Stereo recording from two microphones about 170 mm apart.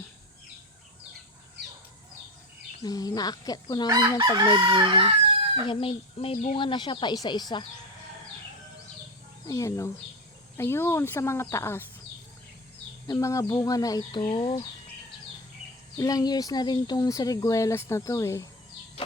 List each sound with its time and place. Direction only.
2.8 s speech: 20° left (ahead or behind)
4.4 s chicken: 25° right (ahead or behind)
5.6 s speech: 35° left (ahead or behind)
9.5 s speech: 20° left (ahead or behind)
13.1 s speech: 20° left (ahead or behind)
16.0 s speech: 20° left (ahead or behind)